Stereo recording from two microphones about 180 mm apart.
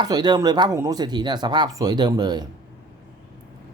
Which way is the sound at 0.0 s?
25° right (ahead or behind).